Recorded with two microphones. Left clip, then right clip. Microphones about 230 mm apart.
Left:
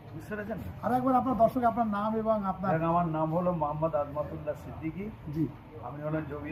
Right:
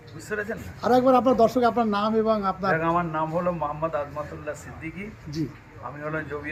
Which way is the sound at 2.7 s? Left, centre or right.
Right.